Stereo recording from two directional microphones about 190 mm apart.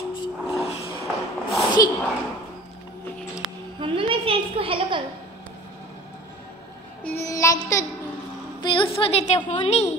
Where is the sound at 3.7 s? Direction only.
25° right (ahead or behind).